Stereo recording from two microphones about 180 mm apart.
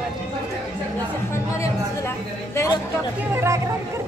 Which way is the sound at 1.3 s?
15° left (ahead or behind).